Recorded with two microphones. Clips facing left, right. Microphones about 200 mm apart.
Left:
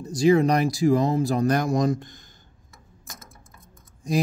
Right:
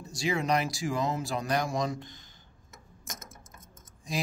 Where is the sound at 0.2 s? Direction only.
40° left (ahead or behind).